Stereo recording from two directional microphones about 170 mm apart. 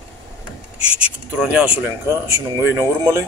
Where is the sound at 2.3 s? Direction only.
15° right (ahead or behind).